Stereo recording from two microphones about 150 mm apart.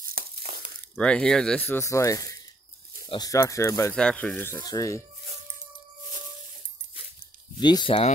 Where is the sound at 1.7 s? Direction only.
20° left (ahead or behind).